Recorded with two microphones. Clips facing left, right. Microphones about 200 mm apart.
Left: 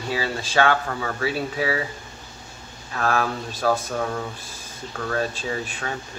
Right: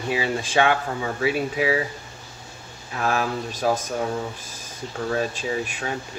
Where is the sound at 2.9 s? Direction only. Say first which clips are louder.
Even; 15° right (ahead or behind).